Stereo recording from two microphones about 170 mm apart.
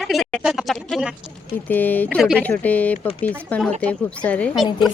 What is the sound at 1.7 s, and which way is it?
Speech, 10° left (ahead or behind).